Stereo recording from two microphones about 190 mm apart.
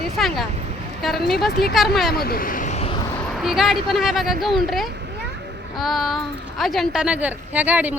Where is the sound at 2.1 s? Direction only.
55° left (ahead or behind); by 2.9 s 40° left (ahead or behind).